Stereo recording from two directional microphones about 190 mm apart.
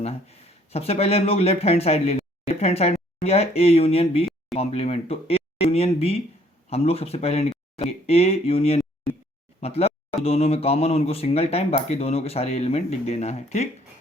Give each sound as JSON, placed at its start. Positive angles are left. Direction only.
{"t": 0.0, "sound": "speech", "side_deg": 35}